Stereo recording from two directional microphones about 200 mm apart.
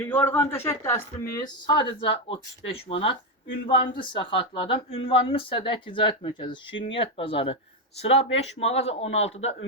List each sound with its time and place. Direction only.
0.0 s speech: 10° left (ahead or behind); by 9.6 s 30° left (ahead or behind)